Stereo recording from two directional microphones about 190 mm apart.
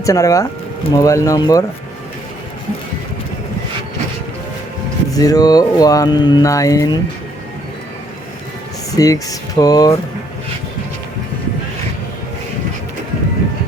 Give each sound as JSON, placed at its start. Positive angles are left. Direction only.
{"t": 0.0, "sound": "speech", "side_deg": 15}
{"t": 5.1, "sound": "speech", "side_deg": 20}
{"t": 9.0, "sound": "speech", "side_deg": 20}